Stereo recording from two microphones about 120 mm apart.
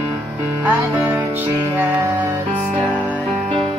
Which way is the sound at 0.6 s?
15° right (ahead or behind).